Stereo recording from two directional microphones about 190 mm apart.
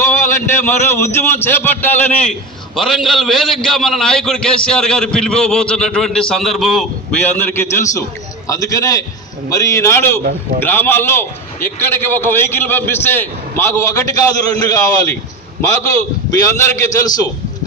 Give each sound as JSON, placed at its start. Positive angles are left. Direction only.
{"t": 0.1, "sound": "a man's voice", "side_deg": 15}
{"t": 16.4, "sound": "a man's voice", "side_deg": 15}